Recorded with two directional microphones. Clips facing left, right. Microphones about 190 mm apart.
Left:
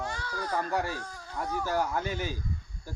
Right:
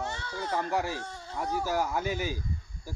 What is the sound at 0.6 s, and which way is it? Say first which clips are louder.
Speech: right 1 dB; 10° right (ahead or behind).